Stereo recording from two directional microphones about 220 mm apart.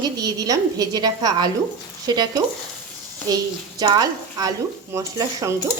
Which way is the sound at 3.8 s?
15° right (ahead or behind).